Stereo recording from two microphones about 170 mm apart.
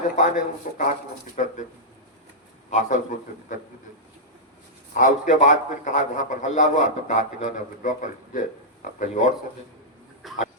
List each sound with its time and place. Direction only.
0.2 s a man's voice: 50° left (ahead or behind)
2.6 s a man's voice: 45° left (ahead or behind)
4.9 s a man's voice: 50° left (ahead or behind)
10.2 s a sound: centre (ahead or behind)